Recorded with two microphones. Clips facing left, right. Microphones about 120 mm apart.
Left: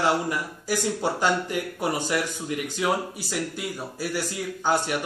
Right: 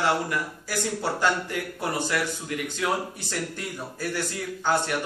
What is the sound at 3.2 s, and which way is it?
A man's voice, 5° left (ahead or behind).